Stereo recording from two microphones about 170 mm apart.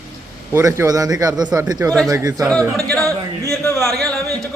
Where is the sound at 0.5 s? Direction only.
15° right (ahead or behind).